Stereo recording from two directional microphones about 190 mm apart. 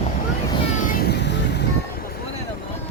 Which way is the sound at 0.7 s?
45° left (ahead or behind).